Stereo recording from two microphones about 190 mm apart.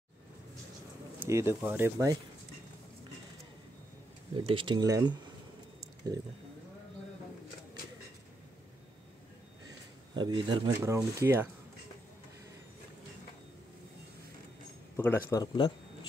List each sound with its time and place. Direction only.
1.2 s speech: 15° right (ahead or behind)
4.5 s speech: 25° right (ahead or behind)
9.7 s speech: 25° right (ahead or behind)
15.0 s speech: 10° left (ahead or behind)